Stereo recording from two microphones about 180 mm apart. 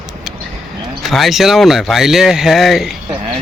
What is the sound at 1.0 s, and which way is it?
Speech, centre (ahead or behind).